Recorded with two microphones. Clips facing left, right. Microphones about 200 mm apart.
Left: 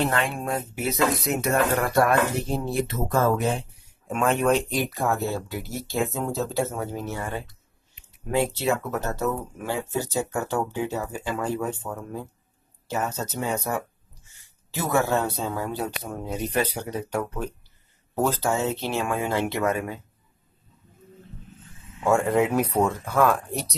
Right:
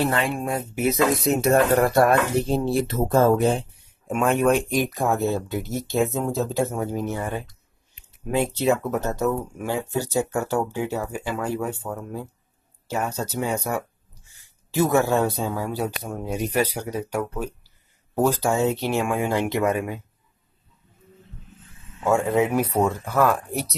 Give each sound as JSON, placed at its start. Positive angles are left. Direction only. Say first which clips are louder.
{"t": 0.0, "sound": "speech", "louder": "right 2 dB", "side_deg": 0}
{"t": 1.2, "sound": "speech", "louder": "right 5 dB", "side_deg": -30}
{"t": 4.1, "sound": "speech", "louder": "right 2 dB", "side_deg": -10}
{"t": 22.0, "sound": "speech", "louder": "right 1 dB", "side_deg": -5}